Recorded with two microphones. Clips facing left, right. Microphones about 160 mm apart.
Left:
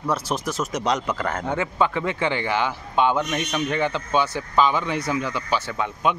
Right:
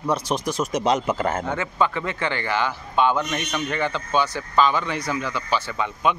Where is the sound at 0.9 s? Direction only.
25° right (ahead or behind).